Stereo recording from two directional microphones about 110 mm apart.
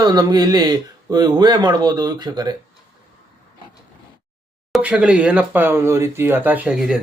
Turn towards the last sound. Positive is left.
turn(degrees=-5)  # may be behind; listen again after turning